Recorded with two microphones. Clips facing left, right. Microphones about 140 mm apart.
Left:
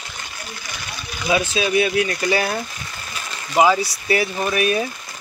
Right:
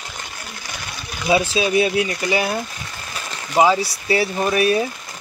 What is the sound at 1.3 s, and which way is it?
Speech, 30° right (ahead or behind).